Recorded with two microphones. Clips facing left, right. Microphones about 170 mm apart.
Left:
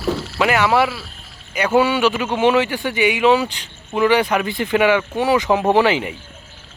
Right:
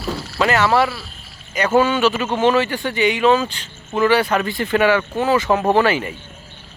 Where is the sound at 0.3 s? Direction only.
10° left (ahead or behind).